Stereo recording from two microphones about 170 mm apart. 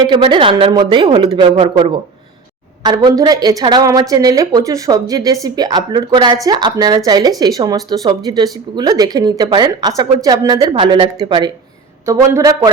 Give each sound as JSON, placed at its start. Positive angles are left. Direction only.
{"t": 0.0, "sound": "a man's voice", "side_deg": -25}